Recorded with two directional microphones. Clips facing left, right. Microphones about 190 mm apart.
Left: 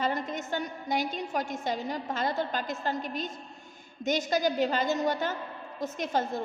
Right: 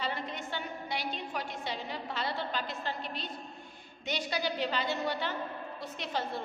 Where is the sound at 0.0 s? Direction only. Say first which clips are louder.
Left 6 dB; 45° left (ahead or behind).